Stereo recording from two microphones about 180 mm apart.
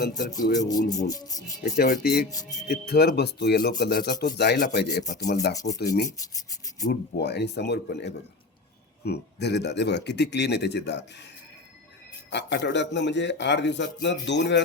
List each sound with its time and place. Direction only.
0.4 s speech: 45° left (ahead or behind)
0.7 s speech: 20° left (ahead or behind)
1.6 s a man's voice: 55° left (ahead or behind); by 5.9 s 70° left (ahead or behind)
7.2 s a man's voice: 70° left (ahead or behind)
12.3 s a man's voice: 75° left (ahead or behind)